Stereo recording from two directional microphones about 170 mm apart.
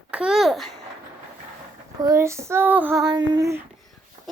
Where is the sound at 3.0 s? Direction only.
25° right (ahead or behind).